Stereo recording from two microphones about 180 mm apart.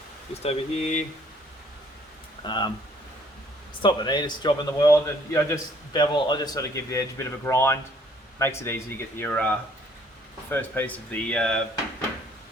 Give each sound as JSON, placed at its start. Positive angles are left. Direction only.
{"t": 0.4, "sound": "speech", "side_deg": 35}
{"t": 2.4, "sound": "a man's voice", "side_deg": 25}
{"t": 3.8, "sound": "a man's voice", "side_deg": 25}